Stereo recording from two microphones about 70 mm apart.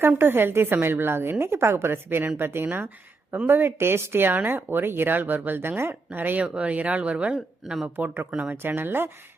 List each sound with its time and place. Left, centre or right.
0.0 s a woman's voice: right
6.4 s speech: centre
7.9 s a woman's voice: right